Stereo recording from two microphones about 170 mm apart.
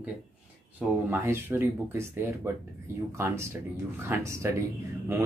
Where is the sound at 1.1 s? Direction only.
15° right (ahead or behind).